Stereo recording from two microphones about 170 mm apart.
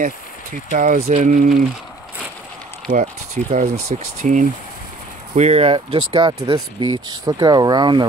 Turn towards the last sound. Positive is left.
turn(degrees=-25)  # may be behind; listen again after turning